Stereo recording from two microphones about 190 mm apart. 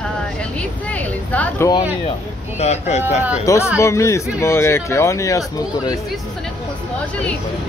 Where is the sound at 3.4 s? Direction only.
15° left (ahead or behind).